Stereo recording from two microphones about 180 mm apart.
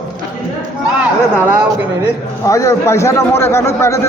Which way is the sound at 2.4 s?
15° left (ahead or behind).